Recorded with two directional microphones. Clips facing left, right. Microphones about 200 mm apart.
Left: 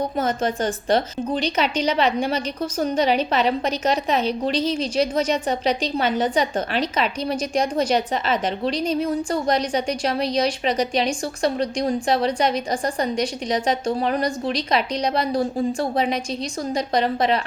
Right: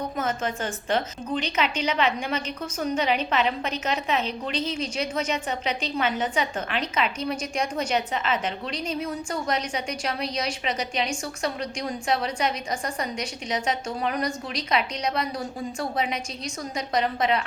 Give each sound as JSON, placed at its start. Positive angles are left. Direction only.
{"t": 0.2, "sound": "a woman's voice", "side_deg": 35}